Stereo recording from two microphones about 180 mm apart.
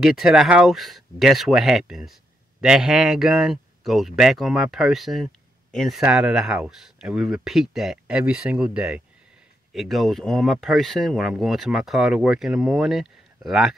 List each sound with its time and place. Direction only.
0.0 s speech: centre (ahead or behind)